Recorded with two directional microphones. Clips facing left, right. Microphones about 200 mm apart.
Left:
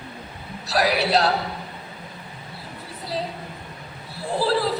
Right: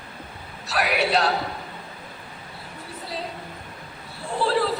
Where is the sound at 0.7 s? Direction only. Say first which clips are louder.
Left 2 dB; 35° left (ahead or behind).